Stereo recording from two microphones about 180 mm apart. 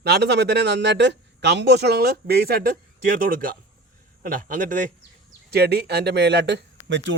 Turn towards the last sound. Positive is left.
turn(degrees=-90)